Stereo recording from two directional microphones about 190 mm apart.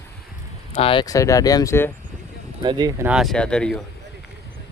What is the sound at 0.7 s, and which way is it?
Speech, 30° left (ahead or behind).